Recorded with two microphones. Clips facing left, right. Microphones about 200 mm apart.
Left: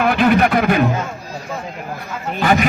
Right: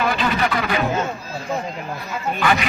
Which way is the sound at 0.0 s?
55° left (ahead or behind).